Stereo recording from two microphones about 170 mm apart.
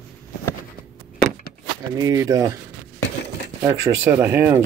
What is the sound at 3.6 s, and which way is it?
Speech, 15° right (ahead or behind).